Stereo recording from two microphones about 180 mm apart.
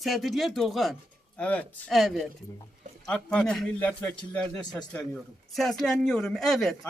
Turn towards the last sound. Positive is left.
turn(degrees=0)  # may be behind; listen again after turning